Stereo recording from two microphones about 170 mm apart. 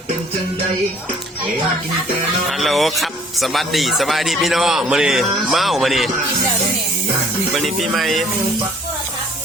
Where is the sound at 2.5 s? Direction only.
Centre (ahead or behind).